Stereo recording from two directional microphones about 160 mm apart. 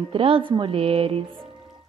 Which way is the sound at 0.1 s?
35° right (ahead or behind).